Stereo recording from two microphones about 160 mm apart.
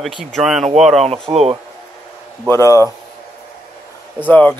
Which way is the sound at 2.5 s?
20° left (ahead or behind).